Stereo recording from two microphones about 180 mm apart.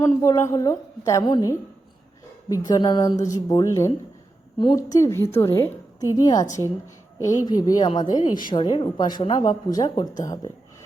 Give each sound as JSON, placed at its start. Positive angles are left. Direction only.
{"t": 0.0, "sound": "a woman's voice", "side_deg": 15}